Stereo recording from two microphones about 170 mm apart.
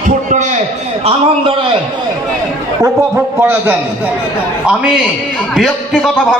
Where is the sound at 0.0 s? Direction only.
45° right (ahead or behind).